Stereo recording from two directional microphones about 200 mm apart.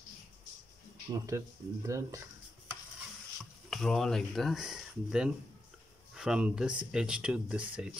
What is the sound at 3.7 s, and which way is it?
Speech, centre (ahead or behind).